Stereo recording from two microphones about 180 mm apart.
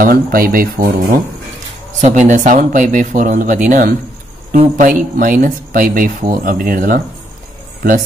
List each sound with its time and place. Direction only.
0.0 s speech: 50° right (ahead or behind)